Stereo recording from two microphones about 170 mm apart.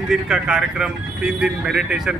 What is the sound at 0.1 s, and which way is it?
Speech, 5° right (ahead or behind).